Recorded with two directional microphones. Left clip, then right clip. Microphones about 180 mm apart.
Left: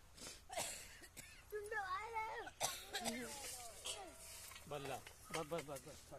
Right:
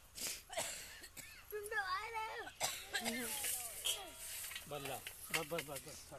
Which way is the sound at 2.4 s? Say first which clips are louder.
Right 2 dB; 10° right (ahead or behind).